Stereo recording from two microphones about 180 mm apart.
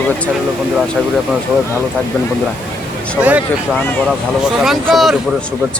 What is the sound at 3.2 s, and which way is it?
Speech, 10° right (ahead or behind).